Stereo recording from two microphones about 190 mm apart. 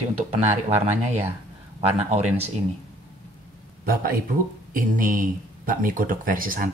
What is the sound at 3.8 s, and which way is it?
Speech, 50° right (ahead or behind).